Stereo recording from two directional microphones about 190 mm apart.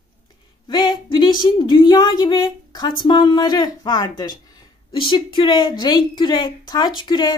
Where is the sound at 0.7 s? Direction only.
20° left (ahead or behind).